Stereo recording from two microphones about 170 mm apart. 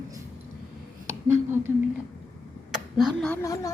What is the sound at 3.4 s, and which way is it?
Speech, 20° left (ahead or behind).